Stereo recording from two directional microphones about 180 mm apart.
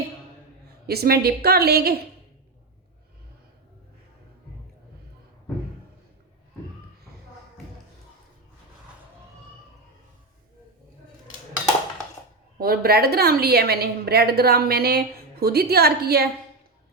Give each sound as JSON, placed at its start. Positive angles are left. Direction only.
{"t": 0.9, "sound": "a woman's voice", "side_deg": -60}
{"t": 12.5, "sound": "a woman's voice", "side_deg": -55}